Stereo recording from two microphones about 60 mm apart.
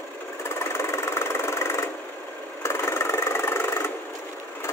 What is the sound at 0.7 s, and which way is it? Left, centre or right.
Engine, left.